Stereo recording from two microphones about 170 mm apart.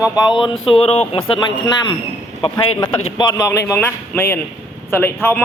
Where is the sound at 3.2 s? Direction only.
20° left (ahead or behind).